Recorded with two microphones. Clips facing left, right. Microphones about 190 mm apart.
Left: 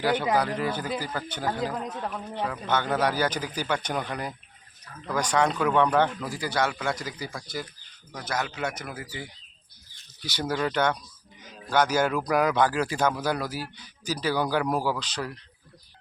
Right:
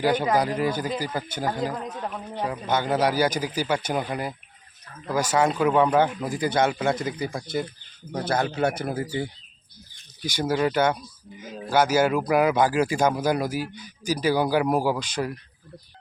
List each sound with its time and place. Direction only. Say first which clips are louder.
0.0 s a man's voice: right 3 dB; 15° right (ahead or behind)
1.7 s a man's voice: right 1 dB; centre (ahead or behind); by 9.3 s 30° right (ahead or behind)
10.2 s a man's voice: right 4 dB; 10° right (ahead or behind)